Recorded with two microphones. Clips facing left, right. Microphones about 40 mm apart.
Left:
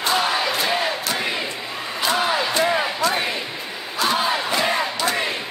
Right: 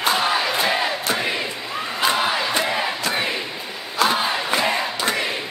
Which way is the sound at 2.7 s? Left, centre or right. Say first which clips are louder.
Left 2 dB; centre.